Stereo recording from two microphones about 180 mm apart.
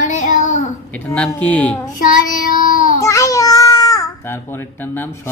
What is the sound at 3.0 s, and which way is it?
Babbling, 15° left (ahead or behind).